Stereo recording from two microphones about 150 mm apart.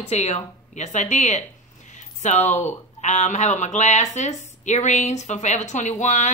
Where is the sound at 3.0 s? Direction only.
50° left (ahead or behind).